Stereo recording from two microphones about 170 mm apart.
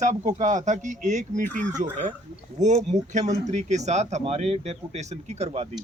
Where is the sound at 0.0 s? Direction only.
45° right (ahead or behind).